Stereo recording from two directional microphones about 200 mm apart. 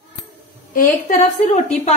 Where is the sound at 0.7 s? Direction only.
40° left (ahead or behind).